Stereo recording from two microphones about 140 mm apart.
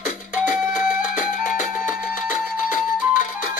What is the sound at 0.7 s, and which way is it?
Music, 65° left (ahead or behind).